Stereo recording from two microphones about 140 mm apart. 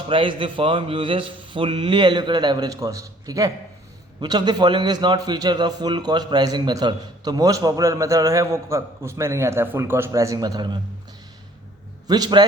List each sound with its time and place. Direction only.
0.1 s a man's voice: 40° right (ahead or behind)
12.0 s a man's voice: 30° right (ahead or behind)